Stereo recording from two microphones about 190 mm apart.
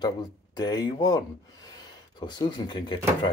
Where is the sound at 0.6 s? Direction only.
20° left (ahead or behind).